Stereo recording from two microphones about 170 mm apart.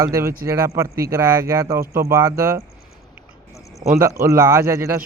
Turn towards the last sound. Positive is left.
turn(degrees=-15)  # may be behind; listen again after turning